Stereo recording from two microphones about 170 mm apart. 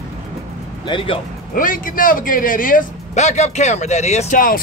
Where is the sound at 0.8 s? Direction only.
30° left (ahead or behind).